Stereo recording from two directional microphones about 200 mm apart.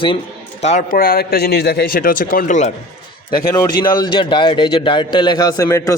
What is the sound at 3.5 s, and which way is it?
A man's voice, 20° left (ahead or behind).